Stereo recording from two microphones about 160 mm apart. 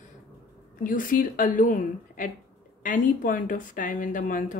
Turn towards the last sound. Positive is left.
turn(degrees=55)  # may be behind; listen again after turning